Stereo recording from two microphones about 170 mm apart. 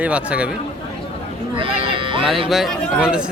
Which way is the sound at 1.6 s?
30° right (ahead or behind).